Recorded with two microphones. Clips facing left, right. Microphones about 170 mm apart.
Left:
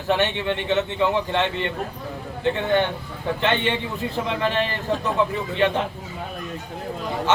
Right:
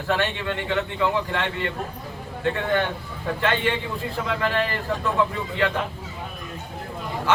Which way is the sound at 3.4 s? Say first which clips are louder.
Left 1 dB; 20° left (ahead or behind).